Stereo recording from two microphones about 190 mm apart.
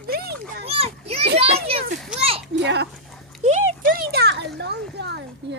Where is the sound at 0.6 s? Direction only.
30° right (ahead or behind).